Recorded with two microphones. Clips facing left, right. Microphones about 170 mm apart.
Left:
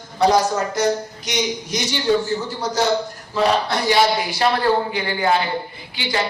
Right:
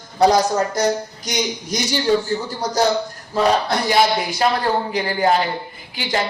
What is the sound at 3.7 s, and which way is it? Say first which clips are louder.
A man's voice: even; 40° right (ahead or behind).